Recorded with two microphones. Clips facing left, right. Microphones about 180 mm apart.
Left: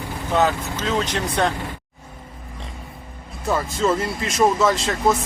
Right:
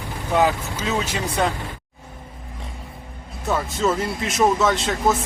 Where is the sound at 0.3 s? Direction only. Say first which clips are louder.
Even; 10° right (ahead or behind).